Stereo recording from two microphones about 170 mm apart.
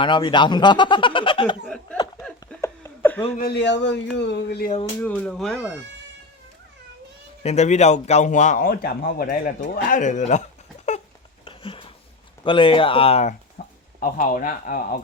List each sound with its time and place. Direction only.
0.0 s speech: 30° left (ahead or behind)
1.6 s chuckle: 5° left (ahead or behind)
3.3 s a man's voice: 75° left (ahead or behind)
4.9 s speech: 10° left (ahead or behind)
5.5 s speech: 15° right (ahead or behind)
7.4 s a man's voice: 40° left (ahead or behind); by 10.0 s 65° left (ahead or behind)
10.0 s a man's voice: 45° left (ahead or behind)
11.4 s a sound: 30° left (ahead or behind)
12.5 s speech: 30° left (ahead or behind)
13.6 s a sound: 55° left (ahead or behind)
14.0 s speech: 55° left (ahead or behind)